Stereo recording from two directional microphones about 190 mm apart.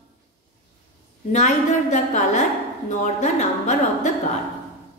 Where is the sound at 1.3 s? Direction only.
40° left (ahead or behind).